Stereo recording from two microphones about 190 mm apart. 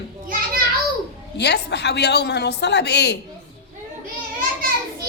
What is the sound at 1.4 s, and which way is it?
A woman's voice, 60° left (ahead or behind).